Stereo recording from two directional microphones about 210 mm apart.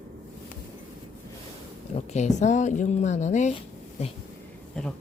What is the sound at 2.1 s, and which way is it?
A woman's voice, 35° left (ahead or behind).